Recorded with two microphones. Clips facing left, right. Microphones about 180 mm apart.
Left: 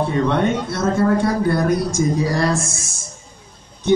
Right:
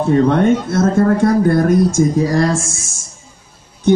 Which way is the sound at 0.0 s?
45° right (ahead or behind).